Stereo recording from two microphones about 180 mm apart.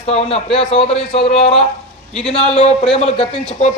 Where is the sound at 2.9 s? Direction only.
30° left (ahead or behind).